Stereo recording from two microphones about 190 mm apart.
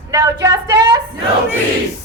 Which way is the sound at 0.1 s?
20° right (ahead or behind).